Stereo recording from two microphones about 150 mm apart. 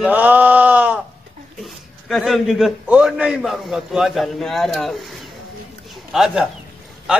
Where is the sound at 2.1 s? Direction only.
Centre (ahead or behind).